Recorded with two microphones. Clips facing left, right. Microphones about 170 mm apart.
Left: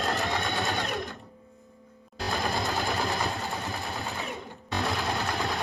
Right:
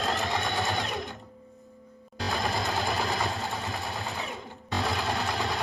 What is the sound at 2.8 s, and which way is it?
Vehicle, centre (ahead or behind).